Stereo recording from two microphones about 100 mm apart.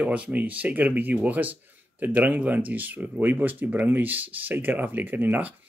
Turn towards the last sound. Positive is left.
turn(degrees=-20)  # may be behind; listen again after turning